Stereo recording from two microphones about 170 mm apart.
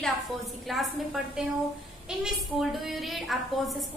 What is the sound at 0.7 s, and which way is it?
A woman's voice, centre (ahead or behind).